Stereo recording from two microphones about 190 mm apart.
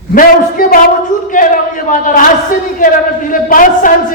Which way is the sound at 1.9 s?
45° left (ahead or behind).